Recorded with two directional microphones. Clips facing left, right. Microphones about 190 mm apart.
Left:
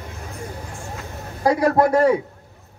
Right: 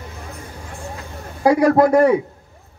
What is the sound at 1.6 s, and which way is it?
Speech, 30° left (ahead or behind).